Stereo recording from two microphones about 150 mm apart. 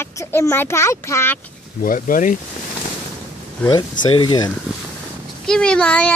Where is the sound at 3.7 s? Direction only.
30° left (ahead or behind).